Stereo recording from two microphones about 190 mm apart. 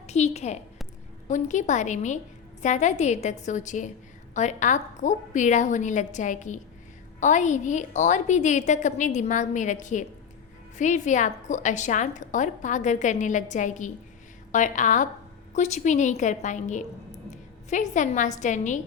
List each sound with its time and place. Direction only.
0.1 s a woman's voice: 35° left (ahead or behind)